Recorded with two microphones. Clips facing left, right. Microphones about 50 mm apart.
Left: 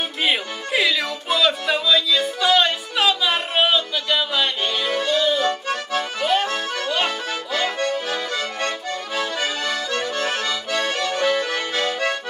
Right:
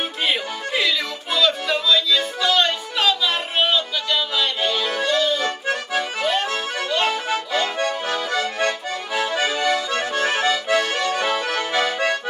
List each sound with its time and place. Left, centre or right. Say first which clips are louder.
0.2 s music: left 1 dB; centre
6.2 s accordion: left 1 dB; centre
7.8 s accordion: even; right
8.5 s accordion: right 2 dB; centre
11.1 s music: left 1 dB; centre
11.7 s accordion: right 3 dB; centre